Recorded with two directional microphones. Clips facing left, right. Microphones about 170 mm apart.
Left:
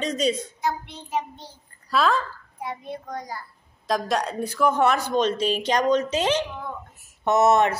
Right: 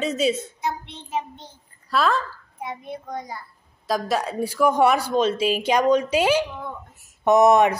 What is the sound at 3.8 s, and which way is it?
Speech, 5° right (ahead or behind).